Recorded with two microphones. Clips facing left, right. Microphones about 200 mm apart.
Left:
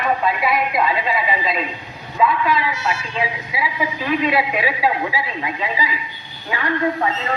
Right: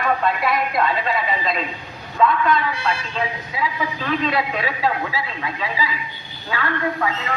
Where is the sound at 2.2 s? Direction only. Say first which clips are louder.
Even; 5° left (ahead or behind).